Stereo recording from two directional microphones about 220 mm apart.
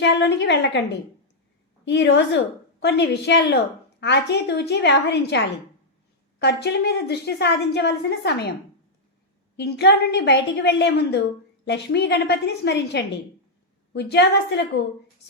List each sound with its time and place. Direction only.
0.0 s a woman's voice: 50° left (ahead or behind)
6.4 s a woman's voice: 50° left (ahead or behind)
9.6 s a woman's voice: 50° left (ahead or behind)